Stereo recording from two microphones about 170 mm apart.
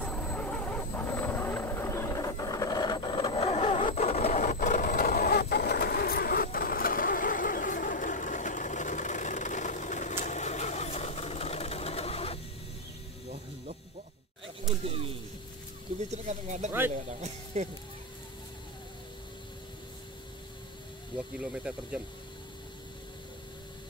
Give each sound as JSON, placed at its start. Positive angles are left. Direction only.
{"t": 0.0, "sound": "vehicle", "side_deg": 5}
{"t": 4.3, "sound": "vehicle", "side_deg": 45}
{"t": 14.6, "sound": "a sound", "side_deg": -35}
{"t": 16.1, "sound": "speech", "side_deg": -45}
{"t": 21.4, "sound": "speech", "side_deg": -5}